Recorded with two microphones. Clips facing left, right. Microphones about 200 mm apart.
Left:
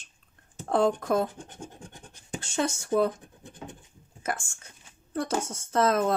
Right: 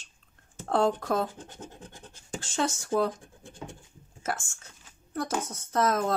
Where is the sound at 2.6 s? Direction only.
20° left (ahead or behind).